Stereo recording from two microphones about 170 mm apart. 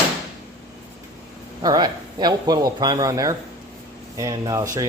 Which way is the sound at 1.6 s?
25° right (ahead or behind).